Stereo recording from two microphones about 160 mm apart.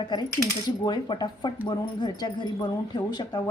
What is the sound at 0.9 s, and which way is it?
A woman's voice, 30° left (ahead or behind).